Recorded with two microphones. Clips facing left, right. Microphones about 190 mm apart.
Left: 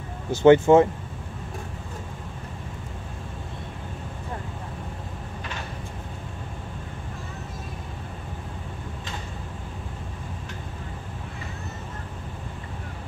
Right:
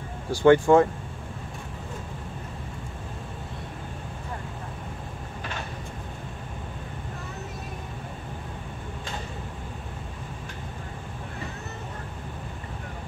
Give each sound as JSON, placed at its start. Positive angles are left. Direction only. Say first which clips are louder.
{"t": 0.3, "sound": "speech", "louder": "left 2 dB", "side_deg": 20}